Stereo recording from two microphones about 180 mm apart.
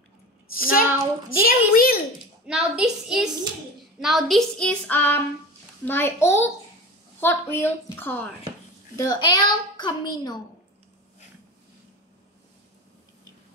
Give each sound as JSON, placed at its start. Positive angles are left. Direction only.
{"t": 0.5, "sound": "a woman's voice", "side_deg": 55}
{"t": 2.4, "sound": "a woman's voice", "side_deg": -5}